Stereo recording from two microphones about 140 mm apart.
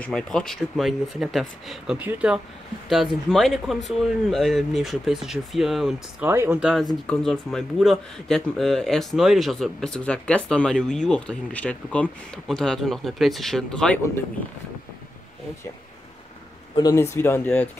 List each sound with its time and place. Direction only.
0.0 s speech: 5° left (ahead or behind)
6.2 s speech: 15° right (ahead or behind)
6.6 s speech: centre (ahead or behind)
16.7 s speech: 25° left (ahead or behind)